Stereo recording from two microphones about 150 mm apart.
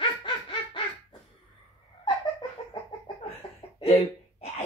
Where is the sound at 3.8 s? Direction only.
40° left (ahead or behind).